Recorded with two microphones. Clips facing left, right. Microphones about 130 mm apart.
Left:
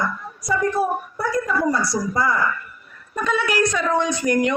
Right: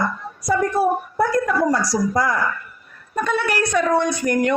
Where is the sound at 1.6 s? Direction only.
80° right.